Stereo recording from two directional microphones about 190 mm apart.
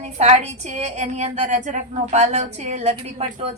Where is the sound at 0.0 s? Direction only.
35° right (ahead or behind).